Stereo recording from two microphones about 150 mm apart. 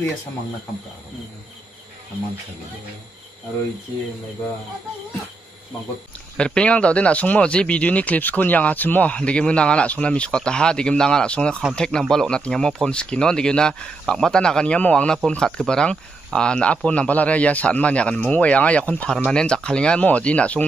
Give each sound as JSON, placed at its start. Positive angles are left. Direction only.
{"t": 6.3, "sound": "speech", "side_deg": 5}